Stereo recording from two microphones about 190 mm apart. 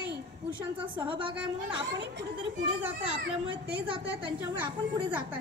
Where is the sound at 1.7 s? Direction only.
65° right (ahead or behind).